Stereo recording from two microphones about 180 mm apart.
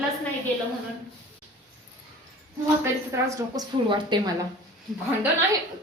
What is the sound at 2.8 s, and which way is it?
A woman's voice, 15° right (ahead or behind).